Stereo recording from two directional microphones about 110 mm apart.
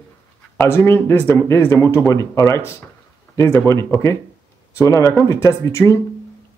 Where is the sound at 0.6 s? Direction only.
20° left (ahead or behind).